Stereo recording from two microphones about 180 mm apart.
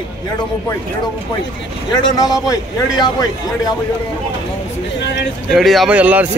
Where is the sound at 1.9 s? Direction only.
20° left (ahead or behind).